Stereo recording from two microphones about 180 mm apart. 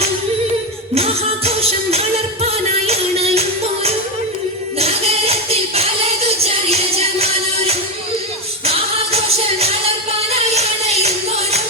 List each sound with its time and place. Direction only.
0.9 s music: 35° right (ahead or behind)
4.8 s music: 35° right (ahead or behind)